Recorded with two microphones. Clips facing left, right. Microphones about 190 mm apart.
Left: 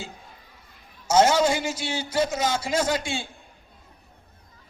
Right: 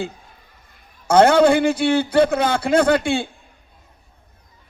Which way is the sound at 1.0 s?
60° right (ahead or behind).